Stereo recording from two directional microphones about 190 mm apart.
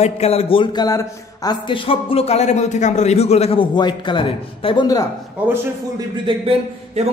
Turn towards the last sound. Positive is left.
turn(degrees=-30)  # may be behind; listen again after turning